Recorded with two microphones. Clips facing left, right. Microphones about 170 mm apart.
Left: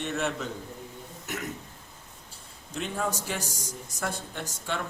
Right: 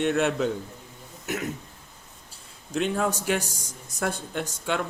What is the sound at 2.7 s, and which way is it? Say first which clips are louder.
Speech: right 6 dB; 75° right (ahead or behind).